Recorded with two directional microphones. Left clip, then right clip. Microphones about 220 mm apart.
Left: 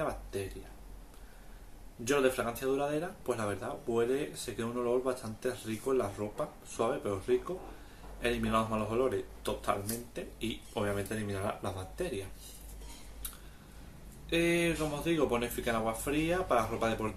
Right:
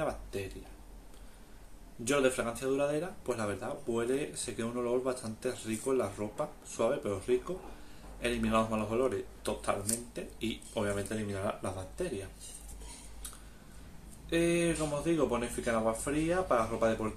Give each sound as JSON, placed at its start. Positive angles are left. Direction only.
{"t": 0.0, "sound": "a sound", "side_deg": -10}
{"t": 2.0, "sound": "speech", "side_deg": -10}
{"t": 14.3, "sound": "speech", "side_deg": -10}